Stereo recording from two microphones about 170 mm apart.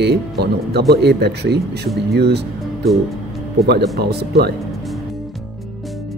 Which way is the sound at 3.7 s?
75° right (ahead or behind).